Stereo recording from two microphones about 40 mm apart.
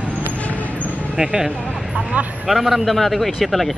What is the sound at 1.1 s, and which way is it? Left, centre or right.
Speech, centre.